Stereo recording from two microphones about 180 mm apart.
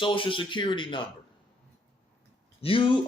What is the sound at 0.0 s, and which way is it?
Speech, 30° left (ahead or behind).